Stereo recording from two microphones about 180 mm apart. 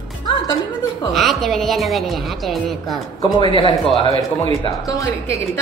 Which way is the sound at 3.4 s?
30° left (ahead or behind).